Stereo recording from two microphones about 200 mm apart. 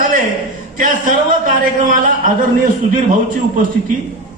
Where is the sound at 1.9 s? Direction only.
40° right (ahead or behind).